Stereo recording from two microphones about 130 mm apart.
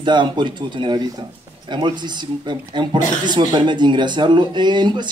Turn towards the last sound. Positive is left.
turn(degrees=-35)  # may be behind; listen again after turning